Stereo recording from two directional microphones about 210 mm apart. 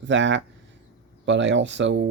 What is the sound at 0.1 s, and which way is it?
Speech, 60° right (ahead or behind).